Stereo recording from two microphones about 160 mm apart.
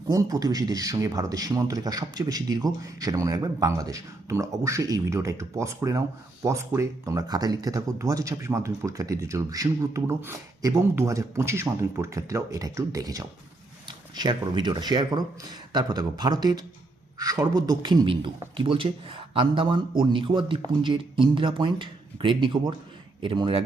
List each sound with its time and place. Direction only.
0.1 s a man's voice: 20° right (ahead or behind)